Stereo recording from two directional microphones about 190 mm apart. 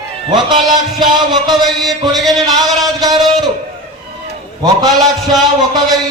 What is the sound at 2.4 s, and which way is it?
Speech, 20° right (ahead or behind).